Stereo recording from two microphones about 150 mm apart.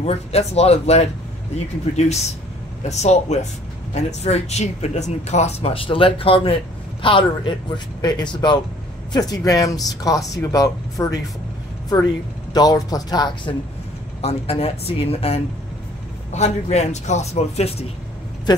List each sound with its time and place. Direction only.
0.0 s a man's voice: 45° left (ahead or behind); by 11.1 s 25° left (ahead or behind)
12.5 s speech: 25° left (ahead or behind)
14.2 s a man's voice: 40° left (ahead or behind)